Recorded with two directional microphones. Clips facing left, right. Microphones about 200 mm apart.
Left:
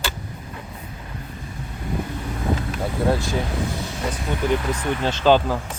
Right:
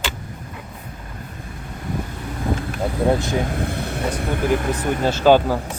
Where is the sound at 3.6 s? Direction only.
60° right (ahead or behind).